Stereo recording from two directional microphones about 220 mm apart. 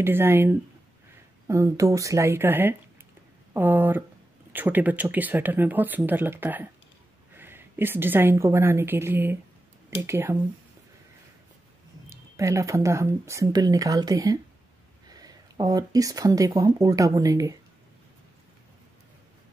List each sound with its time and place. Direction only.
0.0 s a woman's voice: 10° right (ahead or behind)
12.1 s speech: 15° right (ahead or behind)